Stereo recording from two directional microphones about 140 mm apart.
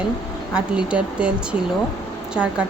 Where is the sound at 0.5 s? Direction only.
5° right (ahead or behind).